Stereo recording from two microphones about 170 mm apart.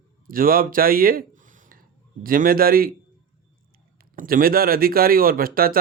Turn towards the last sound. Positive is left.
turn(degrees=-60)  # may be behind; listen again after turning